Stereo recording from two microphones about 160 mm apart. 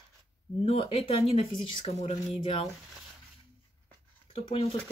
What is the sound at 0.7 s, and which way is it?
Speech, 40° left (ahead or behind).